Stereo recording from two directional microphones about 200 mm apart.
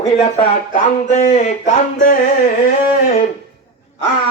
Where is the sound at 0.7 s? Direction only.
35° left (ahead or behind).